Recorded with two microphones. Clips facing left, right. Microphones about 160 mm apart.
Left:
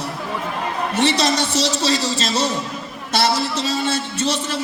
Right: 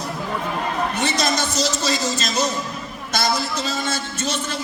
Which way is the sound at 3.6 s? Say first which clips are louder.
Left 3 dB; 30° left (ahead or behind).